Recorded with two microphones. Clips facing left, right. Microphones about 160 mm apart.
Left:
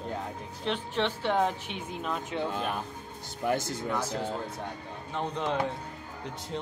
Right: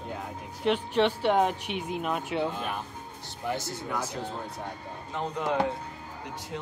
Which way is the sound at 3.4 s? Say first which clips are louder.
Left 3 dB; 50° left (ahead or behind).